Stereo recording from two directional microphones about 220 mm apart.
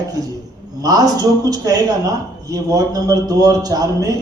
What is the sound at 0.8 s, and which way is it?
A man's voice, 15° right (ahead or behind).